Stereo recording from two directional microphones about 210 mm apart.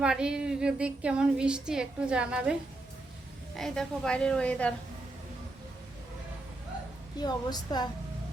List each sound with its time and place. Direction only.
0.0 s a woman's voice: 5° right (ahead or behind)
7.2 s a woman's voice: 20° left (ahead or behind)